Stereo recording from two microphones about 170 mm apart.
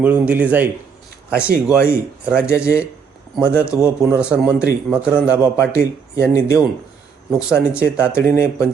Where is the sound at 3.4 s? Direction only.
15° left (ahead or behind).